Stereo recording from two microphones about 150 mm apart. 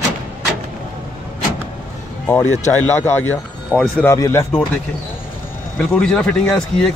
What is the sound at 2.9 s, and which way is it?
Speech, 15° left (ahead or behind).